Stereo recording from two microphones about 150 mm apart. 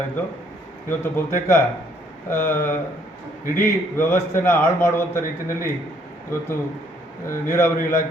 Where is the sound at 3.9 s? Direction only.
15° left (ahead or behind).